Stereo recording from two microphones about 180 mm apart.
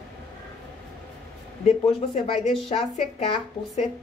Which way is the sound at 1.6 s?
35° left (ahead or behind).